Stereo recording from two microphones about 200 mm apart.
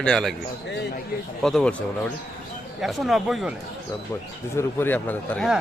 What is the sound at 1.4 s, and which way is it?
Speech, centre (ahead or behind).